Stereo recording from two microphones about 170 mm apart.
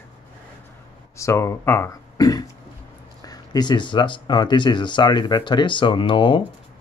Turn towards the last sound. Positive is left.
turn(degrees=30)  # may be behind; listen again after turning